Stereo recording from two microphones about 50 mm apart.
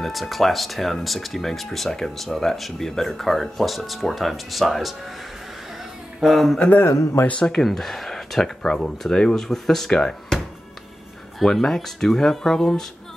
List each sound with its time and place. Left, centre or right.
0.0 s speech: centre
6.2 s speech: centre
6.8 s speech: left
7.2 s speech: left
7.5 s speech: centre
11.3 s speech: centre